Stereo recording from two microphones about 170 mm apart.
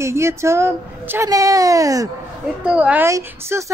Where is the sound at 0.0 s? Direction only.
15° right (ahead or behind).